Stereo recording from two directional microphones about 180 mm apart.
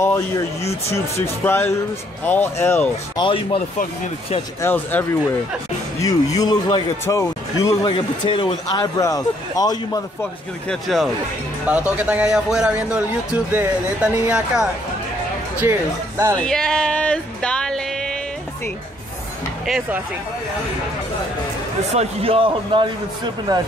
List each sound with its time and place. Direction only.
0.0 s speech: 15° left (ahead or behind)
3.2 s speech: 30° left (ahead or behind)
4.6 s speech: 10° left (ahead or behind)
10.7 s a man's voice: centre (ahead or behind)
16.3 s speech: 5° left (ahead or behind)
19.6 s speech: centre (ahead or behind)
21.9 s a man's voice: 30° right (ahead or behind)